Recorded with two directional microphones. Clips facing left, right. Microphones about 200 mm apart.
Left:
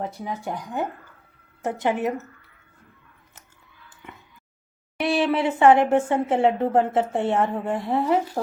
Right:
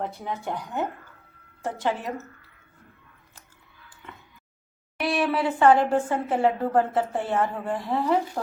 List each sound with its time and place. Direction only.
0.0 s speech: 10° left (ahead or behind)
4.9 s speech: 25° left (ahead or behind)